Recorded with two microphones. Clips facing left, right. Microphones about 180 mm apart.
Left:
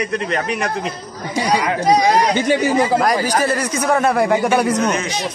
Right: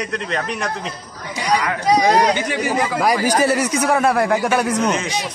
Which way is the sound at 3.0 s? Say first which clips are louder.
Even; 10° right (ahead or behind).